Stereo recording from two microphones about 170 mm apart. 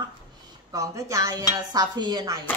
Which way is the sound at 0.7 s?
20° right (ahead or behind).